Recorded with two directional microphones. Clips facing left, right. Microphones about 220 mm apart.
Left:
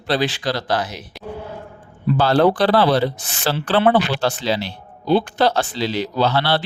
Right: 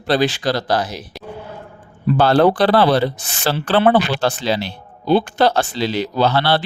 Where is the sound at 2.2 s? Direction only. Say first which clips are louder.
Right 2 dB; 55° right (ahead or behind).